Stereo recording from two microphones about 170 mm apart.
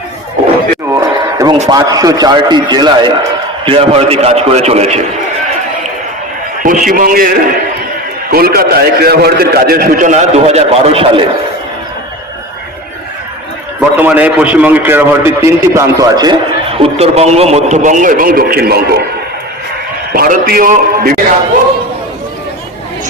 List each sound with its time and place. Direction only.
0.9 s a sound: 20° right (ahead or behind)
1.6 s speech: 20° right (ahead or behind)
3.7 s a man's voice: 35° right (ahead or behind)
6.6 s a man's voice: 55° right (ahead or behind); by 11.2 s 35° right (ahead or behind)
13.9 s a man's voice: 10° right (ahead or behind)
16.8 s a man's voice: 40° right (ahead or behind); by 19.0 s 65° right (ahead or behind)
20.1 s a man's voice: 55° right (ahead or behind)